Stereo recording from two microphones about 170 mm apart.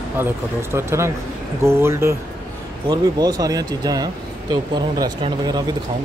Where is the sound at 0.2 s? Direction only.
15° right (ahead or behind).